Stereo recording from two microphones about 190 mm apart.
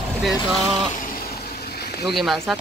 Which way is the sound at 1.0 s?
50° left (ahead or behind).